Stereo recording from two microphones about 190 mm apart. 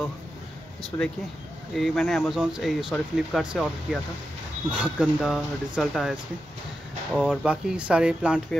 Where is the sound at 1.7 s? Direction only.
Centre (ahead or behind).